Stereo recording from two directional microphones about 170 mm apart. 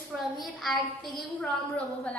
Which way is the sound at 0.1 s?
Centre (ahead or behind).